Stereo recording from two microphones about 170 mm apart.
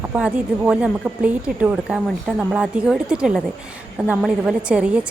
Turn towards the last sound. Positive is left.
turn(degrees=-5)  # may be behind; listen again after turning